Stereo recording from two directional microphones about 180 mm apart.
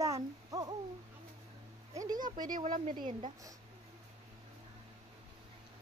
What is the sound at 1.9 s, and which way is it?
Speech, 20° right (ahead or behind).